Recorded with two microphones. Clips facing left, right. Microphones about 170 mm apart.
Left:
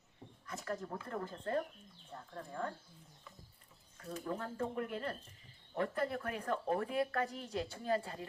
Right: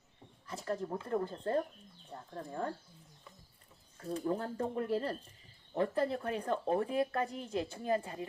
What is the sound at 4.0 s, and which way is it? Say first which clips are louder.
A woman's voice: right 6 dB; 30° right (ahead or behind).